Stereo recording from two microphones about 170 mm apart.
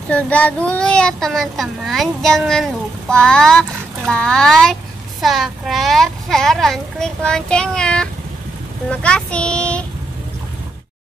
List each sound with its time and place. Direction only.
0.1 s speech: 10° left (ahead or behind)